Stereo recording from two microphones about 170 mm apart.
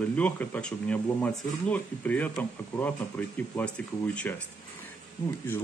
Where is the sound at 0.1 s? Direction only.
10° left (ahead or behind).